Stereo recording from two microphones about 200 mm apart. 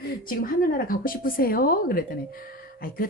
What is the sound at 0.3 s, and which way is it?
A woman's voice, 50° left (ahead or behind).